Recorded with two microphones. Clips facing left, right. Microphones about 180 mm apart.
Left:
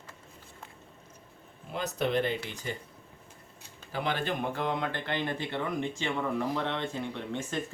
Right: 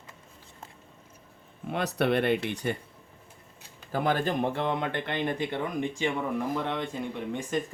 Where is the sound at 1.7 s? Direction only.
70° right (ahead or behind).